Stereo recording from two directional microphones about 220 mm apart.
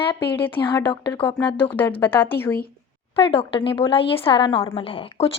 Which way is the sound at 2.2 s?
10° left (ahead or behind).